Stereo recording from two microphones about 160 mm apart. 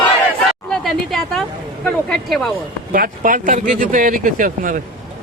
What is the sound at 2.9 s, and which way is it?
Speech, 60° right (ahead or behind).